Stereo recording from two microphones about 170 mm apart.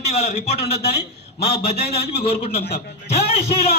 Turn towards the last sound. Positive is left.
turn(degrees=35)  # may be behind; listen again after turning